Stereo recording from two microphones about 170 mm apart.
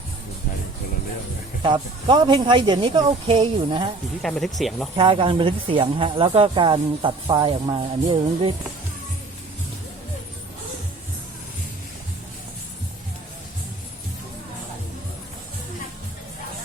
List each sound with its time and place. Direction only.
1.6 s speech: 25° right (ahead or behind)
4.2 s speech: centre (ahead or behind)
4.9 s speech: 30° right (ahead or behind)